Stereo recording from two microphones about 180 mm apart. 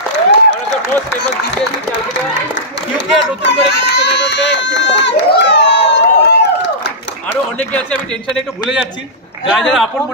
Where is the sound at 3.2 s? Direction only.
75° left (ahead or behind).